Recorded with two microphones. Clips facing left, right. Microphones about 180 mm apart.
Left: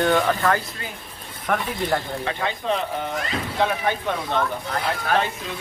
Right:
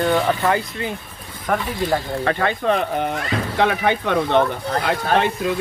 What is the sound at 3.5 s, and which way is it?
Speech, 75° right (ahead or behind).